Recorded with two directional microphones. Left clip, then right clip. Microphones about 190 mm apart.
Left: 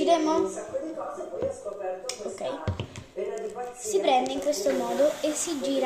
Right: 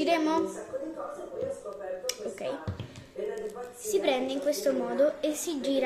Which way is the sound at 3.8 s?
25° right (ahead or behind).